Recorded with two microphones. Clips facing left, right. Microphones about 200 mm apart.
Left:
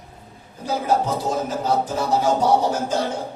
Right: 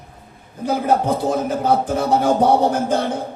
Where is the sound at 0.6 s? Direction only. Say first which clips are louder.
Right 3 dB; 60° right (ahead or behind).